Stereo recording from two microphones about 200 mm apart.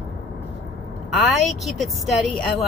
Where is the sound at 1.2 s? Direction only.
Centre (ahead or behind).